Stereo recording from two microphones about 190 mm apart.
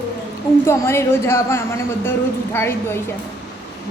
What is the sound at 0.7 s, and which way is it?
A man's voice, 15° left (ahead or behind).